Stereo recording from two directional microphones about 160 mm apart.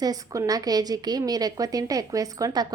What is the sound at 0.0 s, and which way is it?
A woman's voice, 20° right (ahead or behind).